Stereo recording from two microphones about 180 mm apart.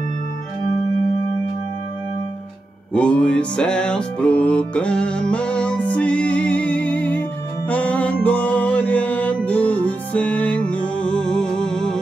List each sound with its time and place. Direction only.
2.9 s music: 5° left (ahead or behind)